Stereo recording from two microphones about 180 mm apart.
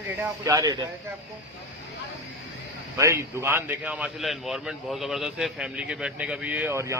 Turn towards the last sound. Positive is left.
turn(degrees=-15)  # may be behind; listen again after turning